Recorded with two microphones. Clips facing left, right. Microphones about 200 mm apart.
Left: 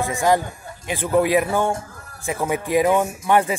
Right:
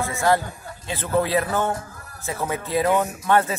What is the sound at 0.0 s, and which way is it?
Speech, 15° left (ahead or behind).